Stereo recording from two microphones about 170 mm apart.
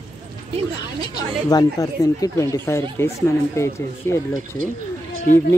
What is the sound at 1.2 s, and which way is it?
Speech, 20° left (ahead or behind).